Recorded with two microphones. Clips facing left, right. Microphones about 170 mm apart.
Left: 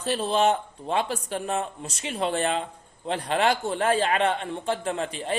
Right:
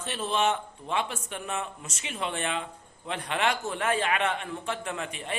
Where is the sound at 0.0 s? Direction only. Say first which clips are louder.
Left 5 dB; 35° left (ahead or behind).